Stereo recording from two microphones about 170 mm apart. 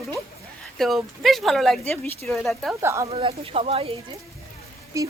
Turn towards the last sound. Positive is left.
turn(degrees=-20)  # may be behind; listen again after turning